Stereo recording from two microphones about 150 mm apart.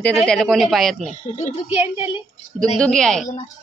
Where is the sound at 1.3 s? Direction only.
45° left (ahead or behind).